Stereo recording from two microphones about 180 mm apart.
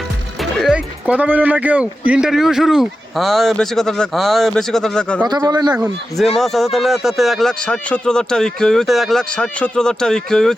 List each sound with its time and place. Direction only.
0.6 s speech: 5° right (ahead or behind)
5.2 s speech: 20° right (ahead or behind)
6.3 s speech: centre (ahead or behind)